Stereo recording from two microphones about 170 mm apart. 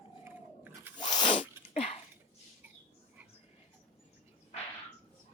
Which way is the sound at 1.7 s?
35° left (ahead or behind).